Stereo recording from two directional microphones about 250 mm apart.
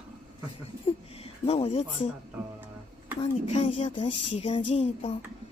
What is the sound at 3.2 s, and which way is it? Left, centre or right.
A woman's voice, left.